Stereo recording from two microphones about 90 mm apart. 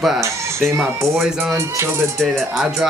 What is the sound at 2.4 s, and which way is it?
Music, 5° right (ahead or behind).